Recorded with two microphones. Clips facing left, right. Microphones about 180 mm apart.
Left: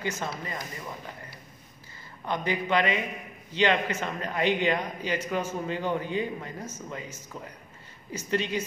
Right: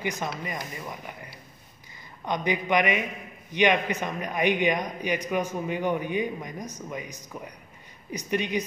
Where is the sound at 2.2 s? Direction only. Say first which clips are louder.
Right 2 dB; 15° right (ahead or behind).